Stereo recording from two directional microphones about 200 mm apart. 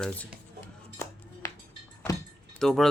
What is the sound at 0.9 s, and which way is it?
Music, 15° left (ahead or behind).